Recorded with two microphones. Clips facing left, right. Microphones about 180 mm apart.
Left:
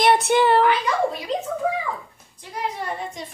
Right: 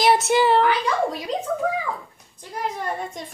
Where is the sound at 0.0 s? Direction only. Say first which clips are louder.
Left 1 dB; centre (ahead or behind).